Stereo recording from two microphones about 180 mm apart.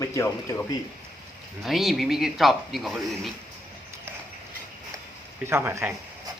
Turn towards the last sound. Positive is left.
turn(degrees=-15)  # may be behind; listen again after turning